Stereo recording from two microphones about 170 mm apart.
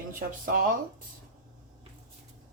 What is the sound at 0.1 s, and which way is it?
Speech, 55° right (ahead or behind).